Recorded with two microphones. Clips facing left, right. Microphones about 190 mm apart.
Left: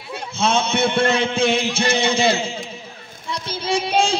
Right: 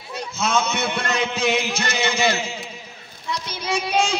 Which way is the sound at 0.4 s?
30° left (ahead or behind).